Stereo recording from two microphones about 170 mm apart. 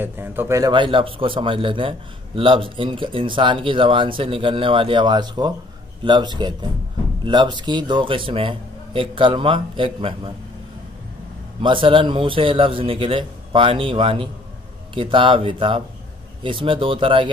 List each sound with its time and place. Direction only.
0.0 s a man's voice: 10° right (ahead or behind); by 10.3 s 30° right (ahead or behind)
11.6 s a man's voice: 30° right (ahead or behind)